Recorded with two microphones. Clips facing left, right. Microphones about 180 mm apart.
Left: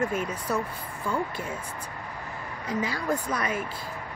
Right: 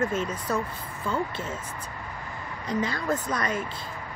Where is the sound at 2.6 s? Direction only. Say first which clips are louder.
Right 1 dB; 10° left (ahead or behind).